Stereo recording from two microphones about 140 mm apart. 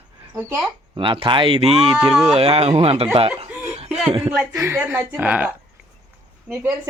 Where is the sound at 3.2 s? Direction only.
45° right (ahead or behind).